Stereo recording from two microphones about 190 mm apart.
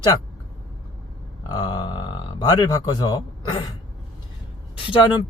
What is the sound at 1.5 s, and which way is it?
Speech, 20° left (ahead or behind).